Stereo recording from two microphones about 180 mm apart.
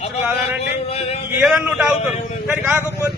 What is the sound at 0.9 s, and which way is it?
Speech, 35° left (ahead or behind).